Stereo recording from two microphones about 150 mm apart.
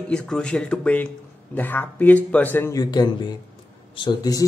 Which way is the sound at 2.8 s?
25° left (ahead or behind).